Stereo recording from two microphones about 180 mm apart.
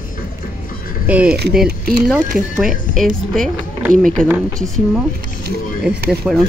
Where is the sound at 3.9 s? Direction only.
50° right (ahead or behind).